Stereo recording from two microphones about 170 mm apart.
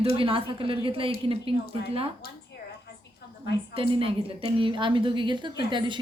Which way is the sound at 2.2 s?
60° left (ahead or behind).